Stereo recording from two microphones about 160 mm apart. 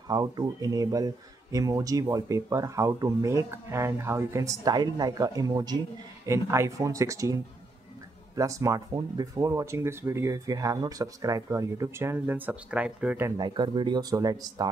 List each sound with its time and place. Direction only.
0.1 s speech: 25° right (ahead or behind)
8.4 s speech: 20° right (ahead or behind)
13.4 s speech: 30° right (ahead or behind)